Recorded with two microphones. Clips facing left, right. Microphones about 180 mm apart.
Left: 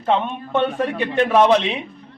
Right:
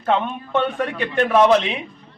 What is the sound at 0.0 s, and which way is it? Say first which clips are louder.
A man's voice: left 1 dB; centre (ahead or behind).